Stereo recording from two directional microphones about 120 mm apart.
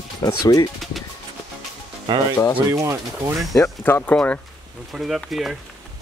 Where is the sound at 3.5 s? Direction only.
20° left (ahead or behind).